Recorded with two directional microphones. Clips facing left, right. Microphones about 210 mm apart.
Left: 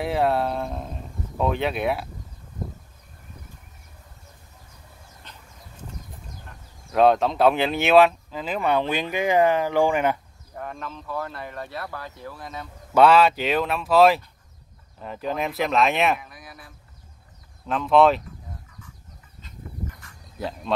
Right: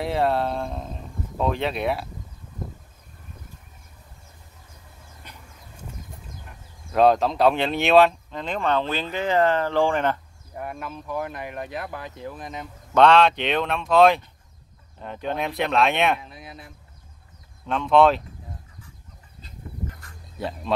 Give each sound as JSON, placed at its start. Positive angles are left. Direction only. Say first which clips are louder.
{"t": 0.0, "sound": "speech", "louder": "even", "side_deg": 0}
{"t": 5.3, "sound": "horse", "louder": "right 2 dB", "side_deg": -10}
{"t": 6.9, "sound": "speech", "louder": "even", "side_deg": 0}
{"t": 10.5, "sound": "speech", "louder": "right 1 dB", "side_deg": -10}
{"t": 12.9, "sound": "speech", "louder": "even", "side_deg": 5}
{"t": 16.2, "sound": "speech", "louder": "right 3 dB", "side_deg": -25}
{"t": 17.6, "sound": "speech", "louder": "even", "side_deg": 0}
{"t": 20.3, "sound": "speech", "louder": "even", "side_deg": 0}